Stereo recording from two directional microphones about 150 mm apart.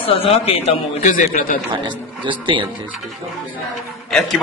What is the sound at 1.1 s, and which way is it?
Speech, 65° left (ahead or behind).